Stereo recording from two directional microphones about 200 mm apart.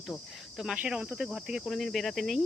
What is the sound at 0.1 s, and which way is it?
Speech, centre (ahead or behind).